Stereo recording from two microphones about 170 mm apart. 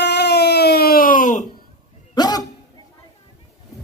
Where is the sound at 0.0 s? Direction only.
85° left; by 1.5 s 50° left (ahead or behind).